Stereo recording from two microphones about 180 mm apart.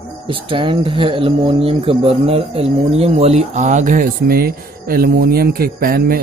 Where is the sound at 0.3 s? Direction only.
30° right (ahead or behind).